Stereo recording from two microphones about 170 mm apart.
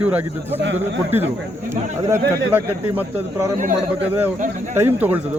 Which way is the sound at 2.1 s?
15° right (ahead or behind).